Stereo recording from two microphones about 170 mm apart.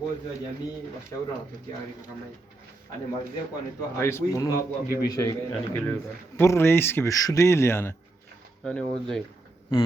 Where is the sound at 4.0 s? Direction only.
15° left (ahead or behind).